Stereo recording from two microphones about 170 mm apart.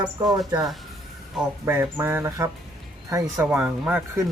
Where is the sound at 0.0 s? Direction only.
25° right (ahead or behind).